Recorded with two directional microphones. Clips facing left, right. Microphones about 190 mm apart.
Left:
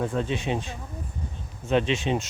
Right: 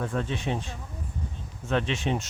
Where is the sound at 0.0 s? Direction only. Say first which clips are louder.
Left 3 dB; 15° left (ahead or behind).